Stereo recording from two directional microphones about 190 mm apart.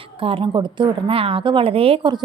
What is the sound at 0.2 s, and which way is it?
A woman's voice, 30° right (ahead or behind).